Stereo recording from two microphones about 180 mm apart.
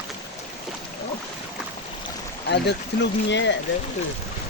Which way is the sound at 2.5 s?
75° left (ahead or behind).